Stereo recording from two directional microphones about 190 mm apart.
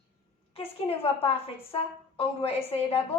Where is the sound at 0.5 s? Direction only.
30° left (ahead or behind).